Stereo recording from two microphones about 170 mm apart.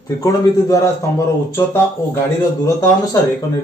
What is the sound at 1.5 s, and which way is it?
Speech, 15° left (ahead or behind).